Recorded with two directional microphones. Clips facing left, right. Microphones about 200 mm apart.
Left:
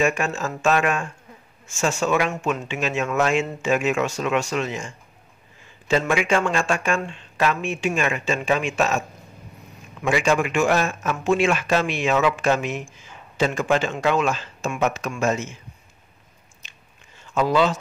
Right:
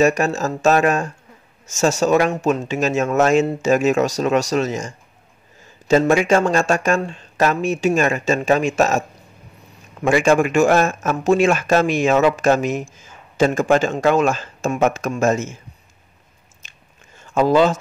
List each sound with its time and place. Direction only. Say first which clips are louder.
0.0 s speech: right 6 dB; 40° right (ahead or behind)
10.0 s speech: right 5 dB; 45° right (ahead or behind)
16.6 s chewing: right 4 dB; 45° right (ahead or behind)